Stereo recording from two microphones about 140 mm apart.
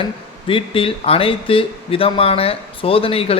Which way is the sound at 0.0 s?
40° left (ahead or behind).